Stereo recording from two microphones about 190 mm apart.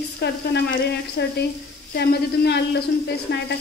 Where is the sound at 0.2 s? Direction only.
60° left (ahead or behind).